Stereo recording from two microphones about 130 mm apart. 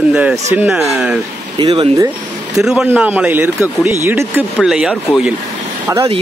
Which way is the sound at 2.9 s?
15° right (ahead or behind).